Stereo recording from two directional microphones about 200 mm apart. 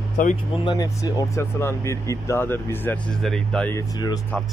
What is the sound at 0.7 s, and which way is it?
Speech, 20° left (ahead or behind).